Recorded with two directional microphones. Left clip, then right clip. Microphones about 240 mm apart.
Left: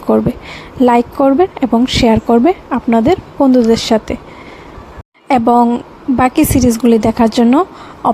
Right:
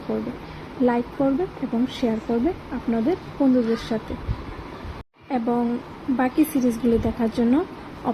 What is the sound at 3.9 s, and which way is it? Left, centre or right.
Speech, left.